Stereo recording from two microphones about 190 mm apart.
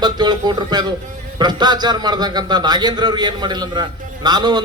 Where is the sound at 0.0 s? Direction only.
20° right (ahead or behind).